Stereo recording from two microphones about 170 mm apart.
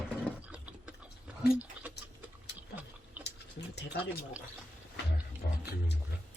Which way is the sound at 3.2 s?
10° right (ahead or behind).